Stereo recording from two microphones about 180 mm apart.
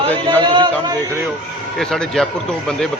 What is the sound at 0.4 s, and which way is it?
Speech, 25° right (ahead or behind).